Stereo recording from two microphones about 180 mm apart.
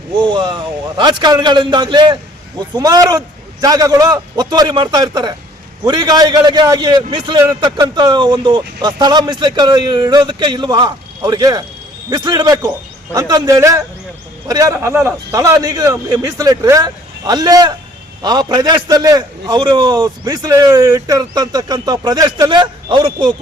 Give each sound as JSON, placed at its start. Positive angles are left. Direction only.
{"t": 0.2, "sound": "a man's voice", "side_deg": -25}